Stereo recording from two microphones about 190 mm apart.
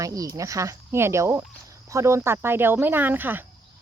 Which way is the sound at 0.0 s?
15° right (ahead or behind).